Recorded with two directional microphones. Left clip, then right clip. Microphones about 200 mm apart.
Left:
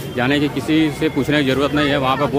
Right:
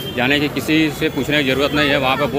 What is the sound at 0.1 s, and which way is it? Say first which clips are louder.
Speech: right 1 dB; 20° left (ahead or behind).